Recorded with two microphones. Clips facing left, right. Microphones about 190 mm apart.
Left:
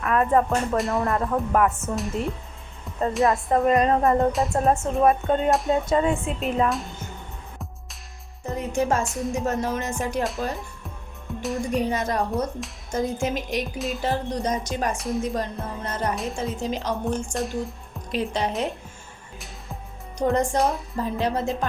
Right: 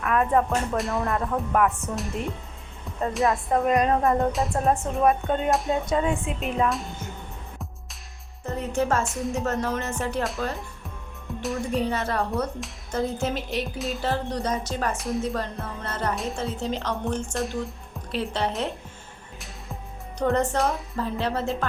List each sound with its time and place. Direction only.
0.0 s music: centre (ahead or behind)
8.4 s music: 15° left (ahead or behind)
9.0 s music: centre (ahead or behind)
9.3 s speech: 10° left (ahead or behind)
11.7 s speech: 15° left (ahead or behind)
13.7 s music: centre (ahead or behind)
14.0 s speech: 15° left (ahead or behind)
14.9 s music: centre (ahead or behind)
15.2 s speech: 15° left (ahead or behind)
17.3 s music: centre (ahead or behind)
18.1 s speech: 15° left (ahead or behind)
20.1 s speech: 15° left (ahead or behind)
20.6 s music: centre (ahead or behind)
20.9 s speech: 15° left (ahead or behind)